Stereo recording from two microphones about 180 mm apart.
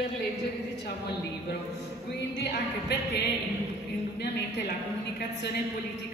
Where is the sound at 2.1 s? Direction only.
65° left (ahead or behind).